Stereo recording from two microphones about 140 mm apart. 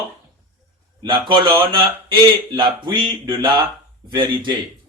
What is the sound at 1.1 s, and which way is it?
Speech, 35° right (ahead or behind).